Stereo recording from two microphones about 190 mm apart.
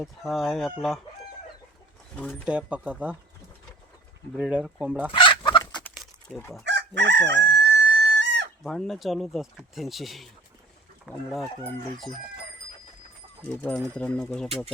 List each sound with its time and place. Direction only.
0.0 s speech: centre (ahead or behind)
2.1 s speech: centre (ahead or behind)
4.4 s speech: 5° right (ahead or behind)
5.1 s fowl: 25° left (ahead or behind)
6.3 s speech: 5° left (ahead or behind)
6.7 s chicken: 65° right (ahead or behind)
8.6 s speech: centre (ahead or behind)
13.6 s speech: 5° left (ahead or behind)